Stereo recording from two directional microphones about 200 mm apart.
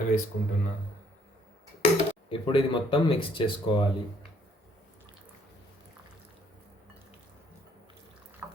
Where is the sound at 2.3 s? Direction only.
25° left (ahead or behind).